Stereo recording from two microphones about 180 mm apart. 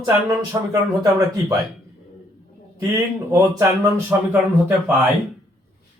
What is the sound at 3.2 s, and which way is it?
Speech, 15° right (ahead or behind).